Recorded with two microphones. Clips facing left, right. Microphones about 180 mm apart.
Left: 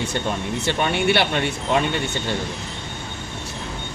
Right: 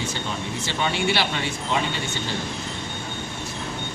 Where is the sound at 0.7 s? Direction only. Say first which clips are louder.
Left 4 dB; 60° left (ahead or behind).